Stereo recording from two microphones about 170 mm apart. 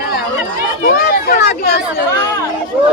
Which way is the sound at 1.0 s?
75° left (ahead or behind).